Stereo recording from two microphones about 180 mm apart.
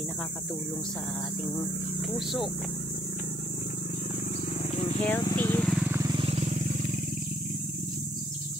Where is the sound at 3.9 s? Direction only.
40° left (ahead or behind).